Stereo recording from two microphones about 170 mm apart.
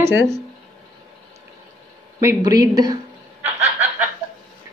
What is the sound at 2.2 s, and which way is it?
Speech, 20° right (ahead or behind).